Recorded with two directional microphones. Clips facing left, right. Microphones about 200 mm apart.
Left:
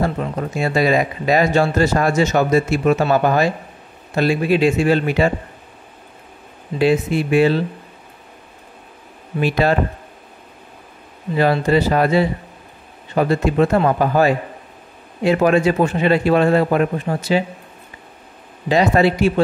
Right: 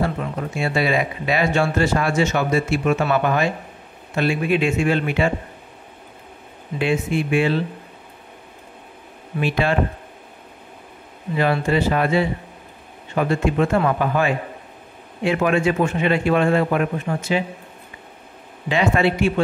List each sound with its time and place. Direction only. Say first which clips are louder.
0.0 s speech: left 3 dB; 40° left (ahead or behind)
6.8 s speech: left 5 dB; 35° left (ahead or behind)
9.4 s speech: left 4 dB; 40° left (ahead or behind)
11.3 s speech: left 4 dB; 35° left (ahead or behind)
18.7 s speech: left 4 dB; 40° left (ahead or behind)